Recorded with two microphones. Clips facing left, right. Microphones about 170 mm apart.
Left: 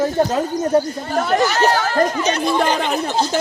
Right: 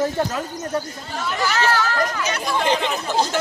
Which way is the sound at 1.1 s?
55° left (ahead or behind).